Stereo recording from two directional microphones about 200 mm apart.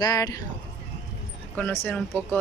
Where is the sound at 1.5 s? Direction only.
5° left (ahead or behind).